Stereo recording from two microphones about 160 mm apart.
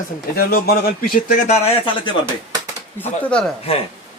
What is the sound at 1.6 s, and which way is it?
Speech, 35° left (ahead or behind).